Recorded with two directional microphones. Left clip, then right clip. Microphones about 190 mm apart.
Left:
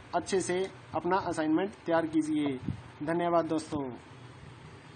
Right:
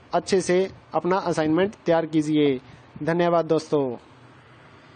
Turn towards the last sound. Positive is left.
turn(degrees=-40)  # may be behind; listen again after turning